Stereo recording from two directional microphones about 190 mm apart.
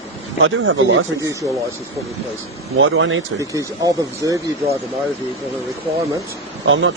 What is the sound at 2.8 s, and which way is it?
Speech, 90° right.